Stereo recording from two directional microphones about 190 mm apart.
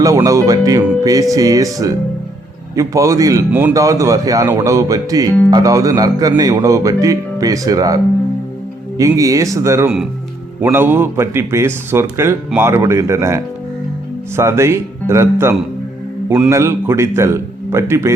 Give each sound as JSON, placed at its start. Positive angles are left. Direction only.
{"t": 0.0, "sound": "a man's voice", "side_deg": -15}